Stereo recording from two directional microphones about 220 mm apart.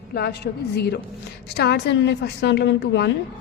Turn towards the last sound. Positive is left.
turn(degrees=50)  # may be behind; listen again after turning